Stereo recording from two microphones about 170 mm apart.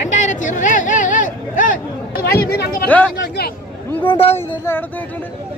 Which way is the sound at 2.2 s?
65° left (ahead or behind).